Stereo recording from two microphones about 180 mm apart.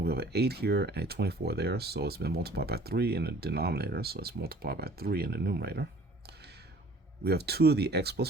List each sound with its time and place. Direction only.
0.0 s speech: 65° right (ahead or behind)